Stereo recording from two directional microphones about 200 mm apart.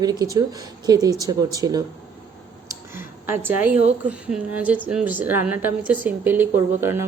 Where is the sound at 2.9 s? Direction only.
10° right (ahead or behind).